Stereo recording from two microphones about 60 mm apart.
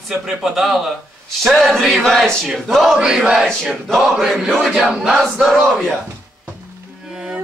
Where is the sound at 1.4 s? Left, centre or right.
Centre.